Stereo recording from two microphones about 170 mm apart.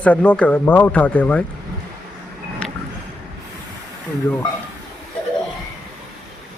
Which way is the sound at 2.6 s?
5° left (ahead or behind).